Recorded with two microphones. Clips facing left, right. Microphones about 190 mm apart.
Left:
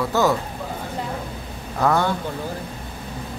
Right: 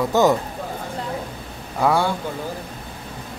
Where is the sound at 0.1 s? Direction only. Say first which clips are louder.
Right 3 dB; 20° right (ahead or behind).